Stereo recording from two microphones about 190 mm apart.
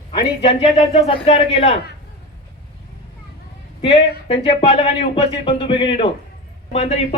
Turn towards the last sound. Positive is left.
turn(degrees=30)  # may be behind; listen again after turning